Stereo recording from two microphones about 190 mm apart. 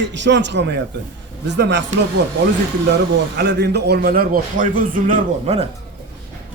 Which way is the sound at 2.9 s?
65° right (ahead or behind).